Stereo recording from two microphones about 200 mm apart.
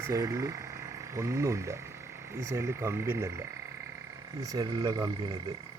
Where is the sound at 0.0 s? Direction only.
15° right (ahead or behind).